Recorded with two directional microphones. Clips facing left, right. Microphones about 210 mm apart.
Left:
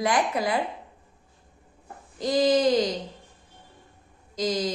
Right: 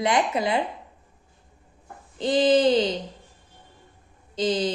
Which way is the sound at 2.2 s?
25° right (ahead or behind).